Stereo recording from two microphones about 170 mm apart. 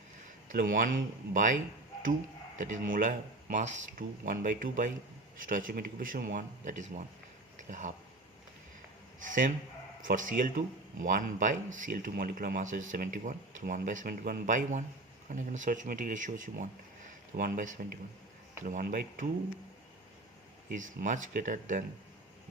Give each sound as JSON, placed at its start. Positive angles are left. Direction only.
{"t": 0.4, "sound": "speech", "side_deg": -55}
{"t": 2.6, "sound": "speech", "side_deg": -50}
{"t": 9.2, "sound": "speech", "side_deg": -50}
{"t": 20.7, "sound": "speech", "side_deg": -50}